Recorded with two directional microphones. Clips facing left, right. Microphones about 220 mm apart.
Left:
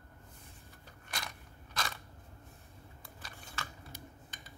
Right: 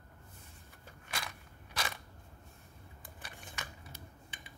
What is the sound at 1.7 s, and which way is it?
Crushing, 15° right (ahead or behind).